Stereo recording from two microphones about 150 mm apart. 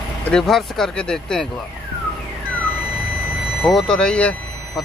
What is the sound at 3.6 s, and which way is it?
Speech, centre (ahead or behind).